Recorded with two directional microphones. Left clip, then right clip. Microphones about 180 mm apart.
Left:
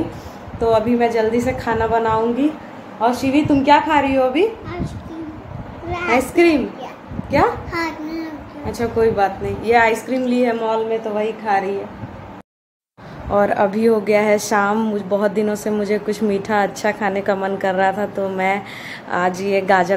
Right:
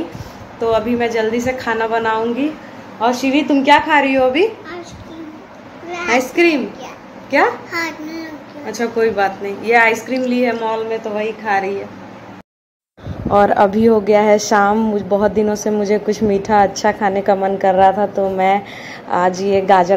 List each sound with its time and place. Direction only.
0.6 s a woman's voice: centre (ahead or behind)
3.0 s a woman's voice: 15° right (ahead or behind)
6.3 s a woman's voice: centre (ahead or behind)
7.7 s speech: 15° left (ahead or behind)
8.6 s a woman's voice: 15° right (ahead or behind)
9.2 s a woman's voice: centre (ahead or behind)
13.3 s a woman's voice: 15° right (ahead or behind)